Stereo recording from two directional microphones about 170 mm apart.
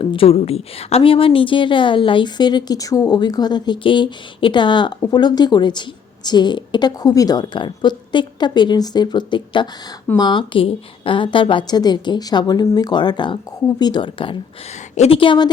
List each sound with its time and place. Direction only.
0.0 s a woman's voice: 30° left (ahead or behind)